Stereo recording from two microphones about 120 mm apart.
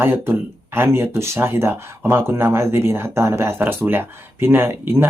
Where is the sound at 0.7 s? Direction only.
20° right (ahead or behind).